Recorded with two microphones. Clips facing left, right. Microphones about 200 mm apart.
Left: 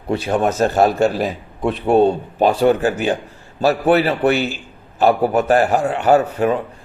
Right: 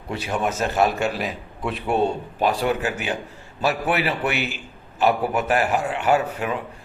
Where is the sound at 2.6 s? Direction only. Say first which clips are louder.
Left 8 dB; 30° left (ahead or behind).